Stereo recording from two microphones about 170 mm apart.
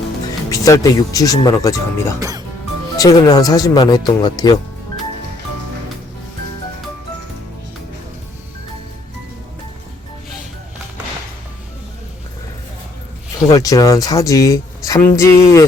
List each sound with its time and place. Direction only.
0.5 s speech: 20° left (ahead or behind)
13.5 s speech: 20° left (ahead or behind)